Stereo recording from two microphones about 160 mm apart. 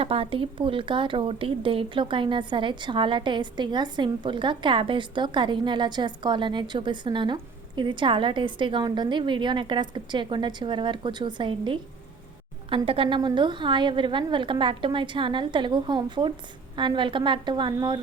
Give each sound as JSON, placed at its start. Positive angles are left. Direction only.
{"t": 0.0, "sound": "a woman's voice", "side_deg": -35}